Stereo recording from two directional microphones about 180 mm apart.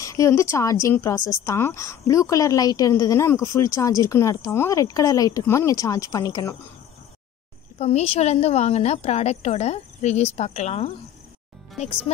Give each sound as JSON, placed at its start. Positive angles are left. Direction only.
{"t": 0.0, "sound": "a woman's voice", "side_deg": 15}
{"t": 7.8, "sound": "a woman's voice", "side_deg": 40}